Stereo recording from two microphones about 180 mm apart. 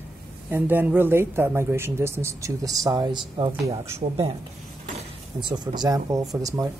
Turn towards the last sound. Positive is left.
turn(degrees=-20)  # may be behind; listen again after turning